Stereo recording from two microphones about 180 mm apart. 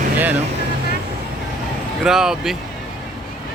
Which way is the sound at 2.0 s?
5° right (ahead or behind).